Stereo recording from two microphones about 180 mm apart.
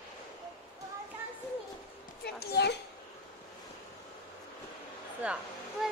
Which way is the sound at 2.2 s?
60° left (ahead or behind).